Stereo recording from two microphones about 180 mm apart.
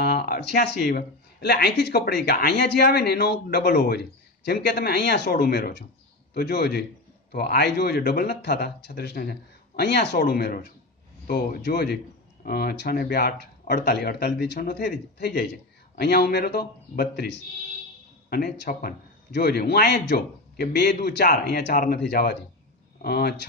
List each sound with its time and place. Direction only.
0.0 s speech: 60° left (ahead or behind)